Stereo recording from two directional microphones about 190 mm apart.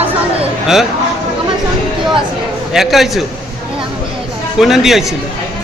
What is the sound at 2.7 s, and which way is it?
Speech, centre (ahead or behind).